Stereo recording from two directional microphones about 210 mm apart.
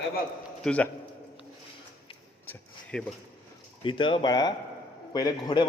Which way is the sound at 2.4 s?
10° left (ahead or behind).